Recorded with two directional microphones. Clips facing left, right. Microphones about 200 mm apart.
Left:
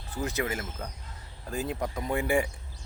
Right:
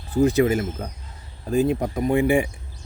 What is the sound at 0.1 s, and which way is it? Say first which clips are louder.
Speech: right 13 dB; 30° right (ahead or behind).